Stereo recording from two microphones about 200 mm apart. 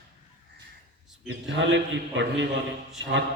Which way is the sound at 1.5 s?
65° right (ahead or behind).